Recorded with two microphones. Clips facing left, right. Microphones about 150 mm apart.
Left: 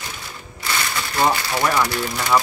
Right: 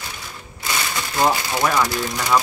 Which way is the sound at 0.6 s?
20° right (ahead or behind).